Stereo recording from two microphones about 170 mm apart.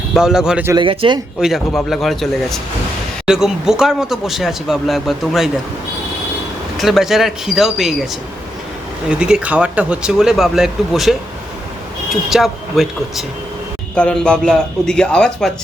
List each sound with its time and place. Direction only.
0.1 s speech: 5° right (ahead or behind)
0.7 s speech: 30° right (ahead or behind)
1.4 s speech: centre (ahead or behind)
6.7 s speech: centre (ahead or behind)
9.0 s speech: 5° right (ahead or behind)
12.3 s speech: centre (ahead or behind)